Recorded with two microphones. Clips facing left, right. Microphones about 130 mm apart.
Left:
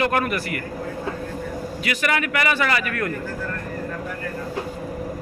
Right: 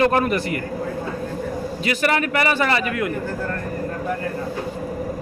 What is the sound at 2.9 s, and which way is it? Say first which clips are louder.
Speech: right 2 dB; 15° right (ahead or behind).